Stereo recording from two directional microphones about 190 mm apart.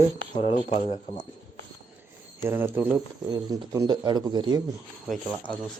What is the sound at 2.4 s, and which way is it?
A man's voice, 10° right (ahead or behind).